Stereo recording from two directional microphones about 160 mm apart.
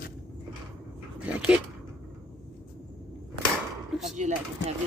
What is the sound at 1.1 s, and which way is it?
Speech, 5° right (ahead or behind).